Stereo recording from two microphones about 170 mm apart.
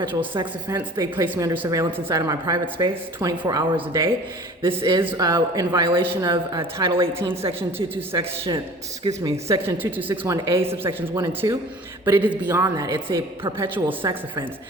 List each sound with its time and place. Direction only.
0.3 s a woman's voice: 20° right (ahead or behind)
5.0 s a woman's voice: 20° right (ahead or behind)
9.5 s a woman's voice: 15° right (ahead or behind); by 13.5 s 30° right (ahead or behind)
13.6 s a woman's voice: 10° right (ahead or behind)
14.0 s a woman's voice: 30° right (ahead or behind)